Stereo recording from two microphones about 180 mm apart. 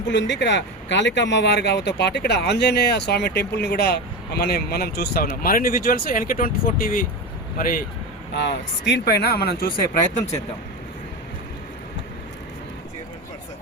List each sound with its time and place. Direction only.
0.1 s speech: 80° left; by 7.9 s 55° left (ahead or behind)
8.4 s speech: 75° left (ahead or behind); by 9.7 s 60° left (ahead or behind)